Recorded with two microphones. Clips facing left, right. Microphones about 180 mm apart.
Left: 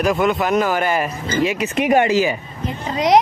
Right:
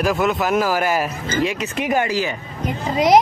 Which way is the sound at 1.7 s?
20° left (ahead or behind).